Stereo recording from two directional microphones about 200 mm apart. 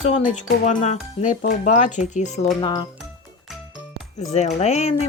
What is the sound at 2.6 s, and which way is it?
Speech, 25° left (ahead or behind).